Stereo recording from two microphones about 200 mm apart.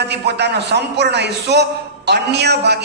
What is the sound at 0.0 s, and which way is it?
A man's voice, 55° right (ahead or behind).